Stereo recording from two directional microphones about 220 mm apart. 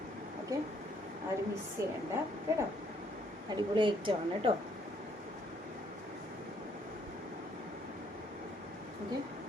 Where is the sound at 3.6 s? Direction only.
20° right (ahead or behind).